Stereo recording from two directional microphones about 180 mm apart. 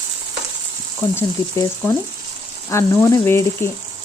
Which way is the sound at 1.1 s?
15° left (ahead or behind).